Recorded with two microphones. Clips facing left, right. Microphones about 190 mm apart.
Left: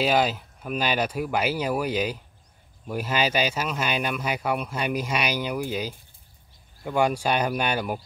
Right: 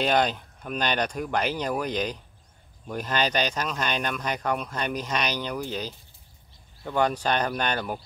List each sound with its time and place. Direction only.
0.0 s speech: 5° left (ahead or behind)